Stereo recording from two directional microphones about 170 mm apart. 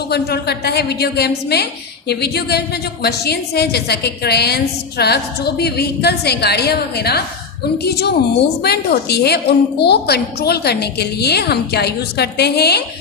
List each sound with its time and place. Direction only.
0.1 s a woman's voice: 70° left (ahead or behind)